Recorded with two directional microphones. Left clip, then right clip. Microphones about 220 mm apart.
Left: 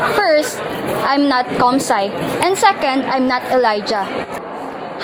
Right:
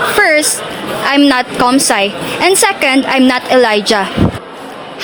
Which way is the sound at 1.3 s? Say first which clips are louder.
Right 3 dB; 35° right (ahead or behind).